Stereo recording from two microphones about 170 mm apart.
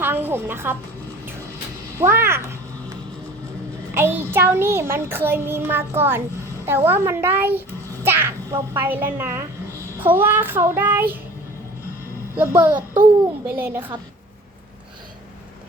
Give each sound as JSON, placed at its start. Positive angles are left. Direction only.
{"t": 0.0, "sound": "music", "side_deg": -10}
{"t": 2.0, "sound": "a child's voice", "side_deg": -15}
{"t": 3.9, "sound": "a child's voice", "side_deg": -15}
{"t": 8.0, "sound": "a sound", "side_deg": -15}
{"t": 8.7, "sound": "a child's voice", "side_deg": -10}
{"t": 12.4, "sound": "a child's voice", "side_deg": -10}
{"t": 12.7, "sound": "a sound", "side_deg": -30}
{"t": 13.6, "sound": "a child's voice", "side_deg": -10}